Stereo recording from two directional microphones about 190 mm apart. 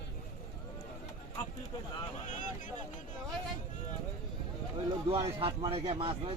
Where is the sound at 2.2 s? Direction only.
40° left (ahead or behind).